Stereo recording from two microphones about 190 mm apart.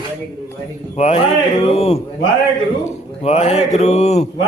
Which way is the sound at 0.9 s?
35° left (ahead or behind).